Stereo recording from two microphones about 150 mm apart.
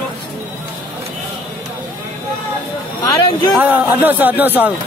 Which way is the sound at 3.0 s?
30° left (ahead or behind).